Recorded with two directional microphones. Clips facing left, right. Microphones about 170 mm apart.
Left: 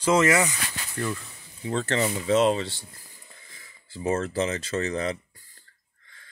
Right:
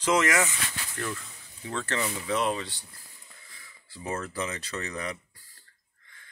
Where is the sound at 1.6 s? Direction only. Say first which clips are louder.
Left 6 dB; 25° left (ahead or behind).